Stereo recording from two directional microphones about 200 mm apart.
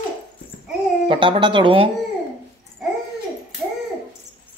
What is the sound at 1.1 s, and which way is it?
Speech, 25° right (ahead or behind).